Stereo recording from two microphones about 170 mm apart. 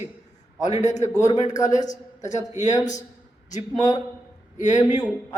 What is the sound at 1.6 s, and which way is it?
A man's voice, 45° left (ahead or behind).